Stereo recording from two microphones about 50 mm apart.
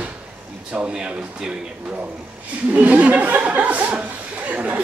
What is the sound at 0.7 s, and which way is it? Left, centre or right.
Speech, centre.